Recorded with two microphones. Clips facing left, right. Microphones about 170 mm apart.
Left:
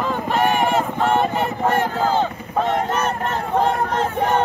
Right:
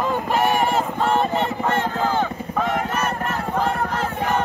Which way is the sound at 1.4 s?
15° left (ahead or behind).